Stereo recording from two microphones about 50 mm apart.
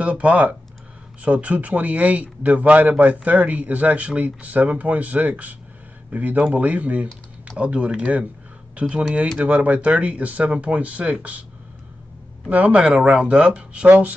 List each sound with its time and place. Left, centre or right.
0.0 s a man's voice: right
12.4 s speech: right